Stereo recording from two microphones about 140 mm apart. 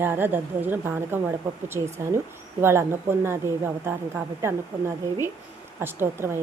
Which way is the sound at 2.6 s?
15° right (ahead or behind).